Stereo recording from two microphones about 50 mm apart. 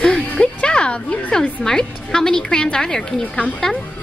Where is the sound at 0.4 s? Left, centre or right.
Centre.